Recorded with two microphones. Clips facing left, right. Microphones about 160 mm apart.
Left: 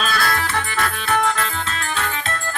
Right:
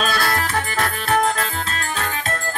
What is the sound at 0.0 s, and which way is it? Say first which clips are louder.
Music: right 1 dB; 40° right (ahead or behind).